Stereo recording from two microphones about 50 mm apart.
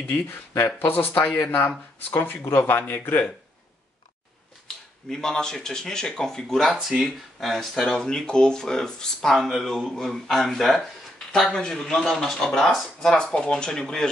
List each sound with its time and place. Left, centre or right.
0.1 s speech: left
2.4 s speech: left
2.8 s speech: left
4.7 s a sound: centre
5.1 s speech: centre
6.6 s speech: centre